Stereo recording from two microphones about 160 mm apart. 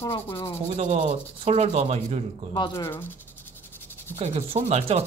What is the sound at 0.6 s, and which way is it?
Speech, 45° right (ahead or behind).